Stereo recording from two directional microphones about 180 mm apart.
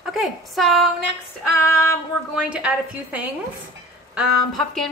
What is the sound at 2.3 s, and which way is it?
A woman's voice, 5° right (ahead or behind).